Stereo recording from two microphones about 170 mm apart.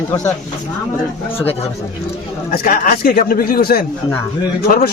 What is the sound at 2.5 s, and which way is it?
A man's voice, 60° left (ahead or behind).